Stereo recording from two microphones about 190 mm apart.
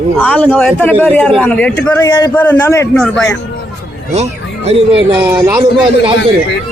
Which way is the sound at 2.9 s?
5° left (ahead or behind).